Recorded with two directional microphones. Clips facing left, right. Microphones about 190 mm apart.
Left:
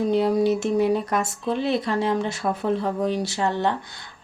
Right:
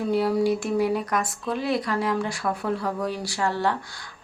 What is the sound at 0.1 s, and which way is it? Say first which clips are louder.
Speech: even; 20° left (ahead or behind).